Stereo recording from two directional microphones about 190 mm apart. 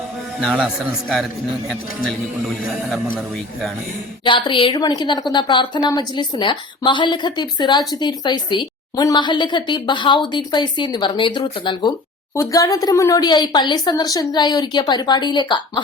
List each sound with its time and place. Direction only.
0.4 s speech: centre (ahead or behind)
2.9 s speech: centre (ahead or behind)
4.2 s a woman's voice: 25° left (ahead or behind)